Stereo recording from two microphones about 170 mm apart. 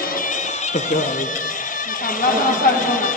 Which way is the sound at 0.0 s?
55° left (ahead or behind).